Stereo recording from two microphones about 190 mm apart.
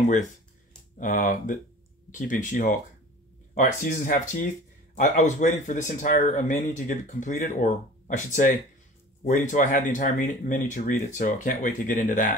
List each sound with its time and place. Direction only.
0.9 s speech: 45° left (ahead or behind)